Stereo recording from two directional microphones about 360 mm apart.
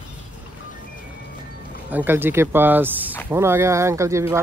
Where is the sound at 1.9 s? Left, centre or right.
Centre.